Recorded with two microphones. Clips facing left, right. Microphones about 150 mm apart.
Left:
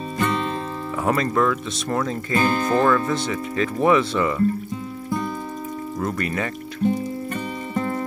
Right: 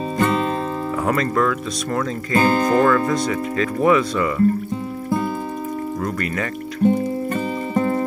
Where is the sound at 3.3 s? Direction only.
25° left (ahead or behind).